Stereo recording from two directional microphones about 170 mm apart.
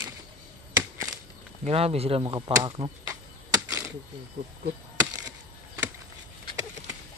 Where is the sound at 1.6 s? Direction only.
35° right (ahead or behind); by 3.9 s 20° right (ahead or behind).